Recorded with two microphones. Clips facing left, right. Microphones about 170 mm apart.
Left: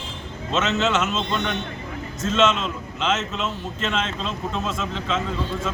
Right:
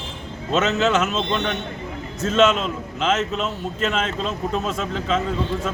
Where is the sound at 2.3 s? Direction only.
40° right (ahead or behind).